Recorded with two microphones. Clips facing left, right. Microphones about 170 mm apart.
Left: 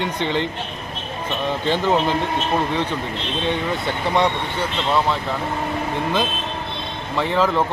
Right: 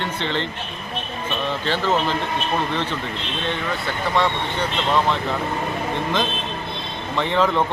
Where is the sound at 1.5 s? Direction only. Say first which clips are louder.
Left 3 dB; 15° left (ahead or behind).